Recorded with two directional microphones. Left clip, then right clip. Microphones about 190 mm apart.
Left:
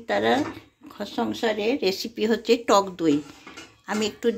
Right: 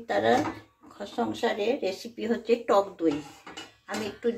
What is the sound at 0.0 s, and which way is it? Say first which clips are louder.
Speech: left 2 dB; 55° left (ahead or behind).